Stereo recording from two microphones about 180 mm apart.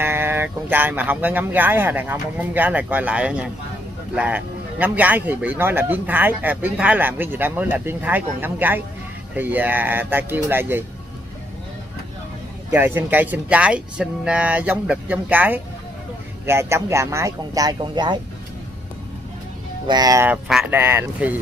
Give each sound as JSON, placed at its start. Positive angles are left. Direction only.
{"t": 0.0, "sound": "a man's voice", "side_deg": -10}
{"t": 12.7, "sound": "a man's voice", "side_deg": -10}
{"t": 19.9, "sound": "speech", "side_deg": -20}
{"t": 20.2, "sound": "a man's voice", "side_deg": -5}